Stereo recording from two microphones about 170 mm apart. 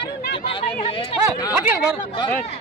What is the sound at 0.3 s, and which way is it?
Chatter, 30° left (ahead or behind).